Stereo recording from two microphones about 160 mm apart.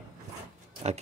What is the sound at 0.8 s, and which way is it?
Speech, 40° right (ahead or behind).